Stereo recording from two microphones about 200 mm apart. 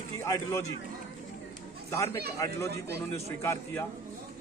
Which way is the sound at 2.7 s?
55° right (ahead or behind).